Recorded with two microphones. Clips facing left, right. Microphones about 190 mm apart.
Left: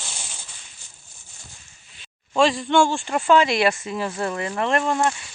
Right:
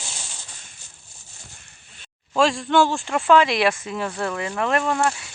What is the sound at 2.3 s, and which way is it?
Speech, centre (ahead or behind).